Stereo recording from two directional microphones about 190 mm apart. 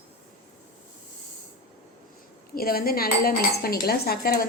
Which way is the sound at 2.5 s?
50° left (ahead or behind).